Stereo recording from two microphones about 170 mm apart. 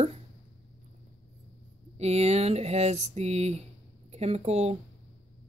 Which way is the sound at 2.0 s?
40° right (ahead or behind).